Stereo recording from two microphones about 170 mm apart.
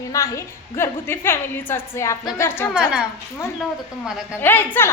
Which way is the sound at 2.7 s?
5° right (ahead or behind).